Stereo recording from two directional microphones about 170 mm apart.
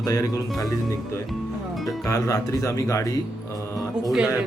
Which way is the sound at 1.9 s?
20° left (ahead or behind).